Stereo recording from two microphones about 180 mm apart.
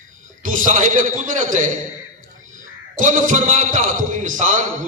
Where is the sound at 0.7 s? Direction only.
45° right (ahead or behind).